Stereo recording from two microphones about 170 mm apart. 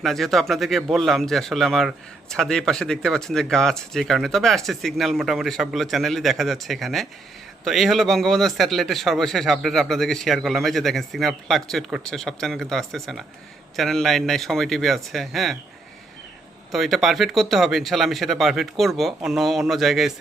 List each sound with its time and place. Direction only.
0.0 s a man's voice: centre (ahead or behind)
16.7 s a man's voice: centre (ahead or behind)